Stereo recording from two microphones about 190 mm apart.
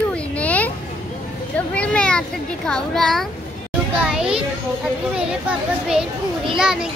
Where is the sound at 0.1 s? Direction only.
5° left (ahead or behind).